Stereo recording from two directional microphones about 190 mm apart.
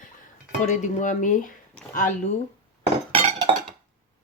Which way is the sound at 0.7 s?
40° left (ahead or behind).